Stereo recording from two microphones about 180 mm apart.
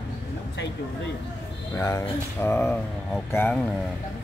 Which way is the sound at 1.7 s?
15° left (ahead or behind).